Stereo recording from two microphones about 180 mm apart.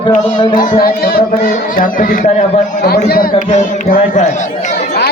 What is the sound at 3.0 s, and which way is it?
Speech, 55° left (ahead or behind).